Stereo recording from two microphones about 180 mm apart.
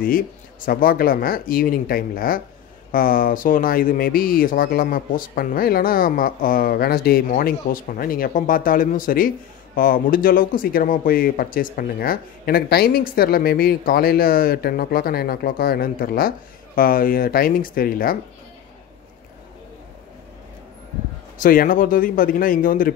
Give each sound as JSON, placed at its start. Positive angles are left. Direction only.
{"t": 0.7, "sound": "speech", "side_deg": 55}
{"t": 21.4, "sound": "speech", "side_deg": 50}